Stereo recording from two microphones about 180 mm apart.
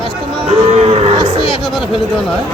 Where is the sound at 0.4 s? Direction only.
35° right (ahead or behind).